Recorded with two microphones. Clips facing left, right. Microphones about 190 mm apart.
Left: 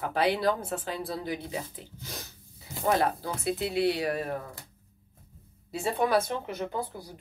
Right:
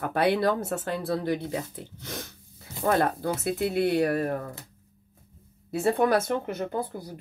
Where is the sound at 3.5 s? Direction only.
50° right (ahead or behind).